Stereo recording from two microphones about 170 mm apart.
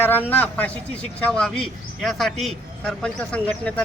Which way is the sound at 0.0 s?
10° left (ahead or behind).